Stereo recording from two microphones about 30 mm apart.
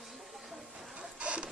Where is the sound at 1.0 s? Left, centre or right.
Right.